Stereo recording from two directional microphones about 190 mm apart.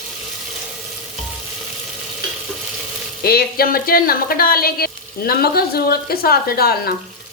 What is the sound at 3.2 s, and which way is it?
Speech, 55° left (ahead or behind).